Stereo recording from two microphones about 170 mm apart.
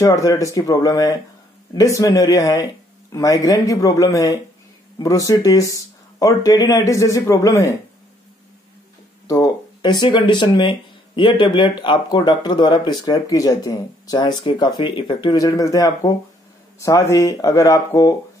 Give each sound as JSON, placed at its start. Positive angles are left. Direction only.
{"t": 0.0, "sound": "speech", "side_deg": 20}
{"t": 9.3, "sound": "speech", "side_deg": 25}